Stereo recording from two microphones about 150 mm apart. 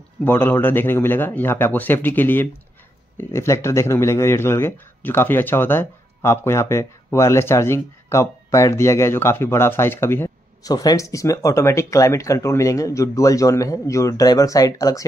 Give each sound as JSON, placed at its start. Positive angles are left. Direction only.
{"t": 0.2, "sound": "speech", "side_deg": 15}